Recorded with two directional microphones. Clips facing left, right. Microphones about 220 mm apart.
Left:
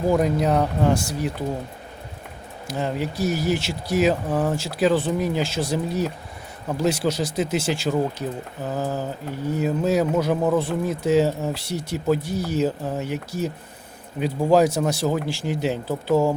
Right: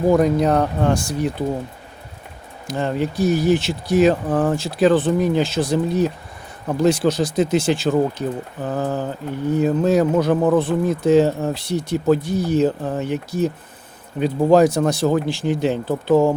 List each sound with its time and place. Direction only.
0.2 s speech: 5° left (ahead or behind)
2.6 s speech: 5° left (ahead or behind)